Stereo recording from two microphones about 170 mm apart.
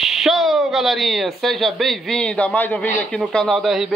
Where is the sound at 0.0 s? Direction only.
Centre (ahead or behind).